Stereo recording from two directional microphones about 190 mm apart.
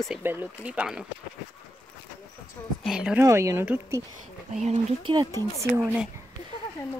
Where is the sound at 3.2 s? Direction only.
15° right (ahead or behind).